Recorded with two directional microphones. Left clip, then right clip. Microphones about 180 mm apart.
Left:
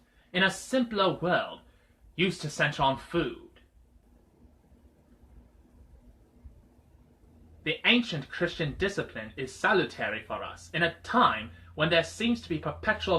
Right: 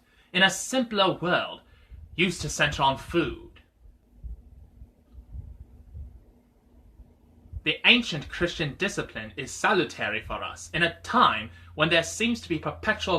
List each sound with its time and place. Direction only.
0.3 s speech: 30° right (ahead or behind)
7.6 s speech: 30° right (ahead or behind)